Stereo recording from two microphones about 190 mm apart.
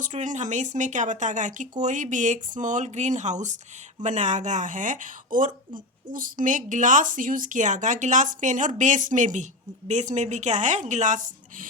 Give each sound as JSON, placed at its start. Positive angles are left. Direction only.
{"t": 0.0, "sound": "a woman's voice", "side_deg": -40}